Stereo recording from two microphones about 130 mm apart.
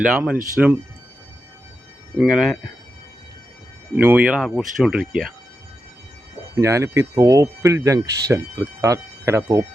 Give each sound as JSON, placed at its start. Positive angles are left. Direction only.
{"t": 0.0, "sound": "speech", "side_deg": -10}
{"t": 2.1, "sound": "speech", "side_deg": -5}
{"t": 3.9, "sound": "speech", "side_deg": -10}
{"t": 6.6, "sound": "speech", "side_deg": -25}